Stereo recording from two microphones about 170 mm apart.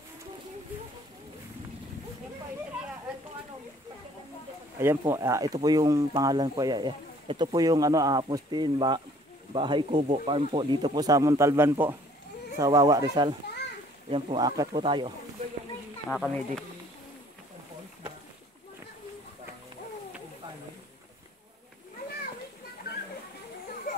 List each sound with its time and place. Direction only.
4.7 s speech: 15° right (ahead or behind); by 15.1 s 30° right (ahead or behind)
16.1 s speech: 5° left (ahead or behind)